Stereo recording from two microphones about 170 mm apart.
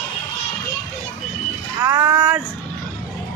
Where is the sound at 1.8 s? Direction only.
15° right (ahead or behind).